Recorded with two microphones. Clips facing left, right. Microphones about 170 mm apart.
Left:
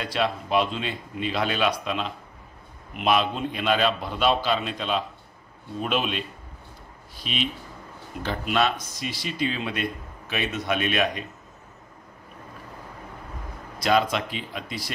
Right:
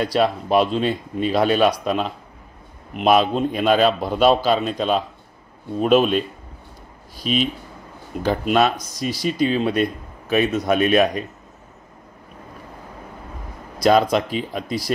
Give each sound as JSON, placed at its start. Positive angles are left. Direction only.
{"t": 0.0, "sound": "a man's voice", "side_deg": -40}
{"t": 13.7, "sound": "a man's voice", "side_deg": -40}